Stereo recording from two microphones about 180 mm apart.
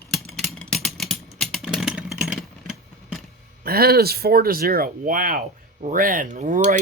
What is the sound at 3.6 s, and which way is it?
Speech, 60° right (ahead or behind).